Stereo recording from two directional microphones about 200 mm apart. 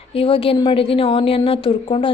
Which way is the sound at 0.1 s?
25° left (ahead or behind).